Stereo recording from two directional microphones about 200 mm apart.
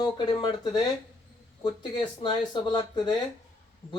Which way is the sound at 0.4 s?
20° left (ahead or behind).